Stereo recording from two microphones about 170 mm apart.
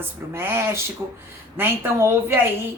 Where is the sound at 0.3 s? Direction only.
15° right (ahead or behind).